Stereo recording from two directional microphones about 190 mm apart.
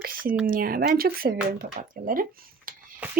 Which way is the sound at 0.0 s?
50° right (ahead or behind).